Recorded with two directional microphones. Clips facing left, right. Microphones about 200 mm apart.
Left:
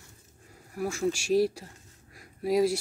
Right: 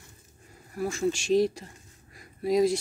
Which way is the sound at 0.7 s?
10° left (ahead or behind).